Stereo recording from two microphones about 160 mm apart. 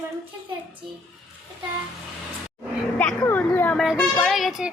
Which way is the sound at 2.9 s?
10° left (ahead or behind).